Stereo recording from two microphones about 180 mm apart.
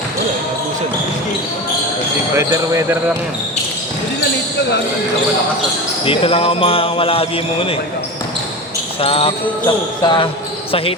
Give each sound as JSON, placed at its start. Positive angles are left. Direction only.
{"t": 2.3, "sound": "speech", "side_deg": -15}
{"t": 6.1, "sound": "a man's voice", "side_deg": 30}
{"t": 9.0, "sound": "speech", "side_deg": 35}